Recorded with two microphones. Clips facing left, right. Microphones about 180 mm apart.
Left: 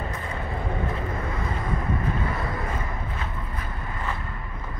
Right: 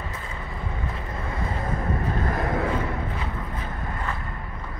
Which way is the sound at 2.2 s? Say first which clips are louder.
Right 4 dB; 60° right (ahead or behind).